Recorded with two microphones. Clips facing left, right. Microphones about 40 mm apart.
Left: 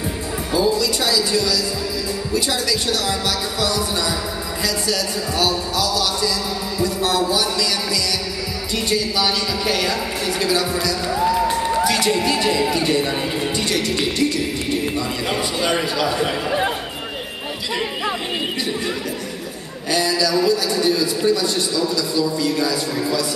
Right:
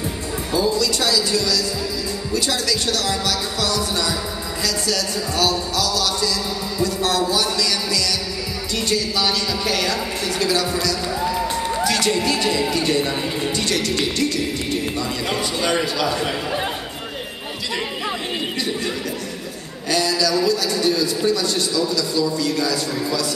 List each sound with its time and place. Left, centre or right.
0.5 s speech: centre
19.9 s speech: centre